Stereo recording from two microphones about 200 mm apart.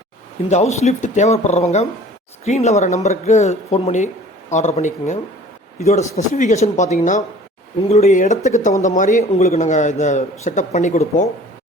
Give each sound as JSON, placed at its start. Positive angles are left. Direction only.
{"t": 0.5, "sound": "speech", "side_deg": 35}